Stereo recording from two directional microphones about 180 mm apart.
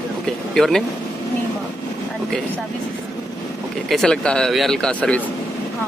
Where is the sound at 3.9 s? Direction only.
5° left (ahead or behind).